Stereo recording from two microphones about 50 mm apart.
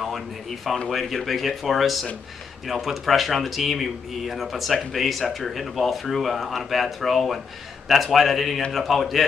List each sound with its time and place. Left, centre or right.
0.8 s speech: centre